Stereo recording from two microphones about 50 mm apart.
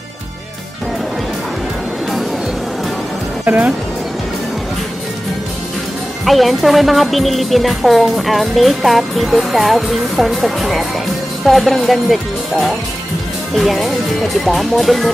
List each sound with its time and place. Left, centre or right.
3.4 s speech: right
6.2 s speech: centre